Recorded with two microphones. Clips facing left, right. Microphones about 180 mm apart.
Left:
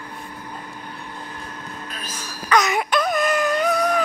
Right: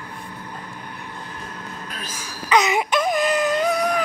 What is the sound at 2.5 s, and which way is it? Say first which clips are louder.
Wail: right 1 dB; 15° right (ahead or behind).